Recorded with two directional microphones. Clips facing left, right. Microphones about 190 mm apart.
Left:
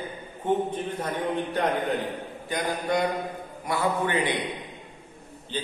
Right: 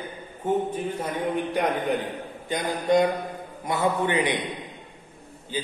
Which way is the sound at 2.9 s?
20° right (ahead or behind).